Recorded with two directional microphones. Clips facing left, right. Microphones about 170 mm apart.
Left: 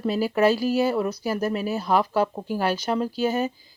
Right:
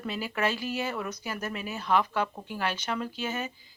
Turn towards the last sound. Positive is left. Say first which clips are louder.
# left 10 dB
turn(degrees=35)  # may be behind; listen again after turning